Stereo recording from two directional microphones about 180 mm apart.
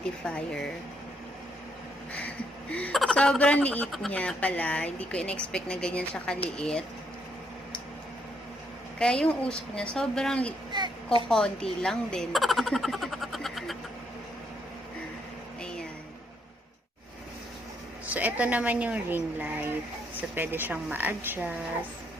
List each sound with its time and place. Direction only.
0.3 s a woman's voice: 5° left (ahead or behind)
2.1 s a woman's voice: 10° left (ahead or behind)
9.0 s a woman's voice: 5° left (ahead or behind)
10.7 s a woman's voice: 25° right (ahead or behind)
11.3 s speech: 5° left (ahead or behind)
18.0 s a woman's voice: 10° right (ahead or behind)